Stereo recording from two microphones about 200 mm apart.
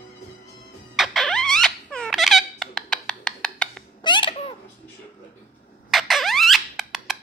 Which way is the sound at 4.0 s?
25° left (ahead or behind).